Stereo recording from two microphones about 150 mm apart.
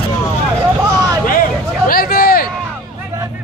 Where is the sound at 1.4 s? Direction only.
75° left (ahead or behind).